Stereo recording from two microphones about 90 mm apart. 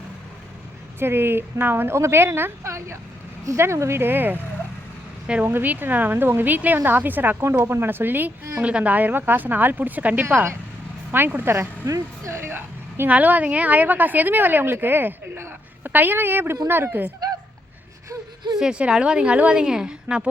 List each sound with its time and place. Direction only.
0.9 s a woman's voice: 25° right (ahead or behind)
5.2 s a woman's voice: 10° right (ahead or behind)
11.9 s a woman's voice: 35° right (ahead or behind)
18.6 s a woman's voice: 10° right (ahead or behind)